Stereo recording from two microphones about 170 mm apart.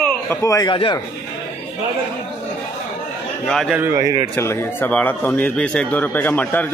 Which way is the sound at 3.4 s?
5° left (ahead or behind).